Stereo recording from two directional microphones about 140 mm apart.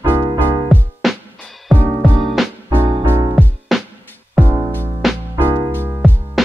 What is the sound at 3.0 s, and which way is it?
Music, 15° right (ahead or behind).